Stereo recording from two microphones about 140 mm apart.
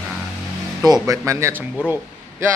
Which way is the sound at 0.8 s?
25° right (ahead or behind).